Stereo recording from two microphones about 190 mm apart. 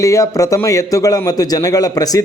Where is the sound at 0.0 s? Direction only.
15° left (ahead or behind).